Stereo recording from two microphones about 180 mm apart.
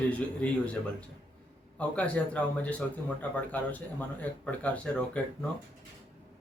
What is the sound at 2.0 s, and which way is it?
Speech, 5° left (ahead or behind).